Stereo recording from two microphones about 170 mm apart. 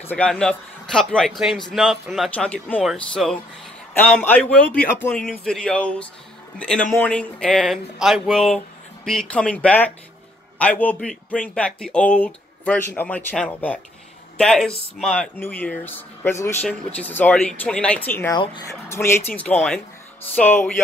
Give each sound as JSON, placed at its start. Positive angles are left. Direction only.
{"t": 0.0, "sound": "a man's voice", "side_deg": 10}
{"t": 18.4, "sound": "speech", "side_deg": 30}
{"t": 18.7, "sound": "speech", "side_deg": 15}